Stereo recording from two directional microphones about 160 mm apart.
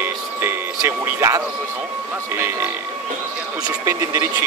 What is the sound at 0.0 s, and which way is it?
Music, 15° right (ahead or behind).